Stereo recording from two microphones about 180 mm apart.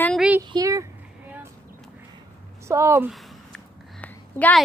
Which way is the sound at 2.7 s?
15° right (ahead or behind).